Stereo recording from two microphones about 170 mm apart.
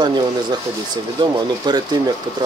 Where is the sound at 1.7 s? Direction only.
25° right (ahead or behind).